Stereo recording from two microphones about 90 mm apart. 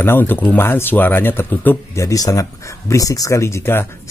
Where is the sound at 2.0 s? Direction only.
40° left (ahead or behind).